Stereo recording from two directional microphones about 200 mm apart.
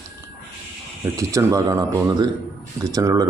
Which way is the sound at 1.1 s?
15° right (ahead or behind).